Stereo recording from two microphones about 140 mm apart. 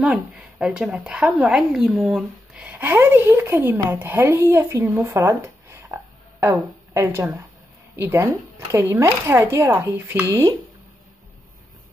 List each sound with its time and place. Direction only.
0.0 s a woman's voice: 5° right (ahead or behind)